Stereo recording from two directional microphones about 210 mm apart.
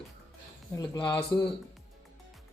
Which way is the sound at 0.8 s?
20° left (ahead or behind).